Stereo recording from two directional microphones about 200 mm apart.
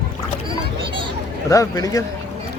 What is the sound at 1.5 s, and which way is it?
Speech, 15° left (ahead or behind).